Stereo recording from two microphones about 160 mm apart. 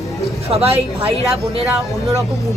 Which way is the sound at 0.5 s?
40° right (ahead or behind).